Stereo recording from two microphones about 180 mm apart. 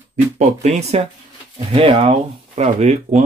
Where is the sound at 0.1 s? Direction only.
40° right (ahead or behind).